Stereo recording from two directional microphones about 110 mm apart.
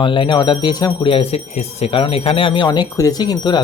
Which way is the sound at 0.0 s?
50° left (ahead or behind).